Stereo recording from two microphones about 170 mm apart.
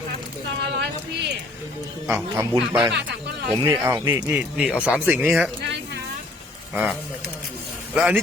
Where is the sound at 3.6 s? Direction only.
15° right (ahead or behind).